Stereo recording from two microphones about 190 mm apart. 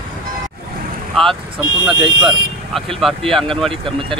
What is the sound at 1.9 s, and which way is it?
Speech, 25° right (ahead or behind).